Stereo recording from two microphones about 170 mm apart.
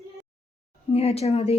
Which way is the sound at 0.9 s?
35° left (ahead or behind).